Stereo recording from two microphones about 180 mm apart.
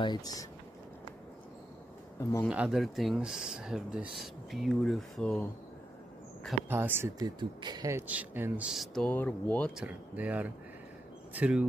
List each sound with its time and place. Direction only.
0.0 s speech: 20° left (ahead or behind)
2.5 s speech: 5° right (ahead or behind)
6.7 s speech: 15° right (ahead or behind)
8.1 s speech: 10° right (ahead or behind); by 9.7 s 10° left (ahead or behind)
9.8 s speech: 10° right (ahead or behind)